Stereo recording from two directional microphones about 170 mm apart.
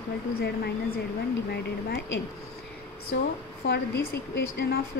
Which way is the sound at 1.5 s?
75° left (ahead or behind).